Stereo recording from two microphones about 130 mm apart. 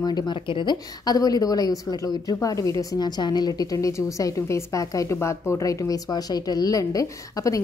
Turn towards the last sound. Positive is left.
turn(degrees=25)  # may be behind; listen again after turning